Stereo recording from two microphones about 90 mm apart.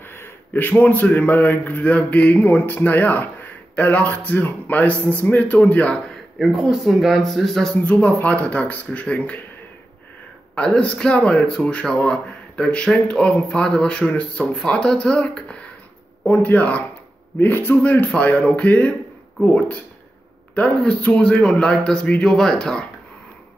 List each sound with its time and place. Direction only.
0.1 s a man's voice: 25° left (ahead or behind)
6.3 s speech: 5° right (ahead or behind)
7.8 s speech: 15° left (ahead or behind)
10.5 s speech: 10° left (ahead or behind)